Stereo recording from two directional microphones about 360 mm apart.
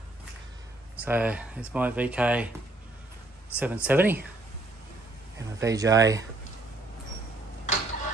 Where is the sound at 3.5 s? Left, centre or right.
Centre.